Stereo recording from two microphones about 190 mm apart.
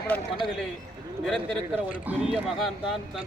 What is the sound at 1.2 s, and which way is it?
Speech, centre (ahead or behind).